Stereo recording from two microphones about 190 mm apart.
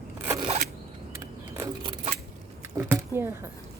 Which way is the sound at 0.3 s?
25° right (ahead or behind).